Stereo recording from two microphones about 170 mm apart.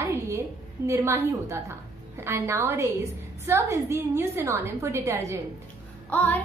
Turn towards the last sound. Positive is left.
turn(degrees=10)  # may be behind; listen again after turning